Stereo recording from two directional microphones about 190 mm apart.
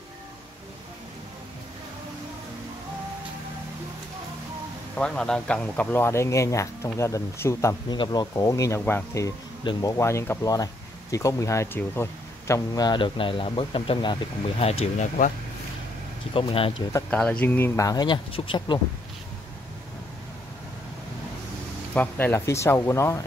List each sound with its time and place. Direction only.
4.9 s speech: 5° left (ahead or behind); by 14.8 s 30° left (ahead or behind)
15.0 s speech: 45° left (ahead or behind)
16.3 s speech: 30° left (ahead or behind)
16.9 s speech: 5° left (ahead or behind); by 18.8 s 25° left (ahead or behind)
21.9 s speech: 10° left (ahead or behind)